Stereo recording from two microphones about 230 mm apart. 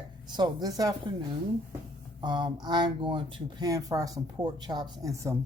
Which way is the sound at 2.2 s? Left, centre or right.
Centre.